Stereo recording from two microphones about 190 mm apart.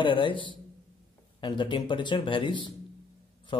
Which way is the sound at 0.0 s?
25° left (ahead or behind).